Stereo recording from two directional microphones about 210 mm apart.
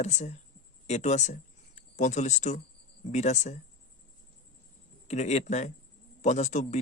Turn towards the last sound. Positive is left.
turn(degrees=35)  # may be behind; listen again after turning